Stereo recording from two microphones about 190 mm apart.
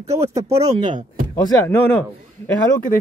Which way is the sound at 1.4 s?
15° left (ahead or behind).